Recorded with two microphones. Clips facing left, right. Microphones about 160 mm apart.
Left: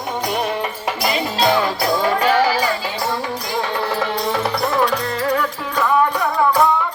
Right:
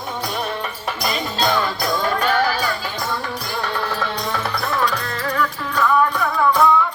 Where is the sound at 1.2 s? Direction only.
90° left.